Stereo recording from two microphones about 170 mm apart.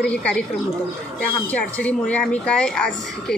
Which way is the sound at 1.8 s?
10° left (ahead or behind).